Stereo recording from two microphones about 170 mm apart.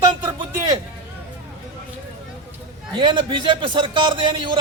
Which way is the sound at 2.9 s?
30° right (ahead or behind).